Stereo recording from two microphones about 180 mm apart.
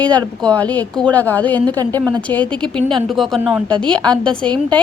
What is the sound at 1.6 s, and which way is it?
Speech, 20° right (ahead or behind).